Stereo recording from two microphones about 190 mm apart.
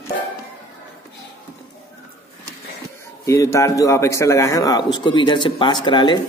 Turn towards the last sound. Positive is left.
turn(degrees=25)  # may be behind; listen again after turning